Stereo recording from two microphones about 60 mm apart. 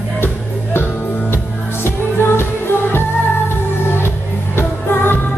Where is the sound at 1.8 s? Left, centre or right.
Left.